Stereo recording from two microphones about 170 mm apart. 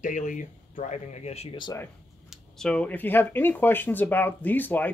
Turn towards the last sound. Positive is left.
turn(degrees=10)  # may be behind; listen again after turning